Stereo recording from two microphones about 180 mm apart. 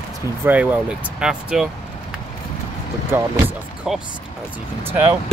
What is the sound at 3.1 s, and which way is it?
Speech, 5° right (ahead or behind).